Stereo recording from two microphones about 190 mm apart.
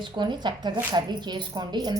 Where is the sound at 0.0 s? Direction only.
25° right (ahead or behind).